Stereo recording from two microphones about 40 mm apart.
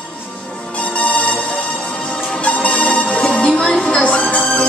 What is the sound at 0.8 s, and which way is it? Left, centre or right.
Music, left.